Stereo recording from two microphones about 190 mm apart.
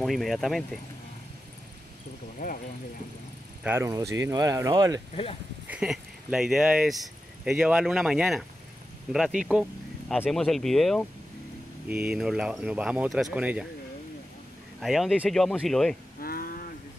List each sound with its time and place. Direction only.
0.0 s speech: centre (ahead or behind)
2.4 s speech: 40° left (ahead or behind)
3.6 s speech: 15° right (ahead or behind)
5.1 s speech: 30° left (ahead or behind)
5.7 s speech: 5° right (ahead or behind)
14.8 s speech: centre (ahead or behind)
16.2 s cattle: 50° left (ahead or behind)